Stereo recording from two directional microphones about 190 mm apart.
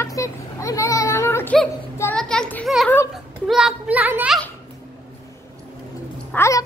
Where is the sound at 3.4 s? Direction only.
5° right (ahead or behind).